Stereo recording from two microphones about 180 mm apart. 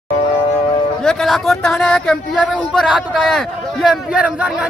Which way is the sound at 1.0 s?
Centre (ahead or behind).